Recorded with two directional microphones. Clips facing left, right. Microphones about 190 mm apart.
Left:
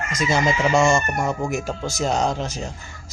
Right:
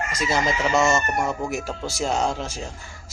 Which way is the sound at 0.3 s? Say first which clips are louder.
Left 3 dB; 5° right (ahead or behind).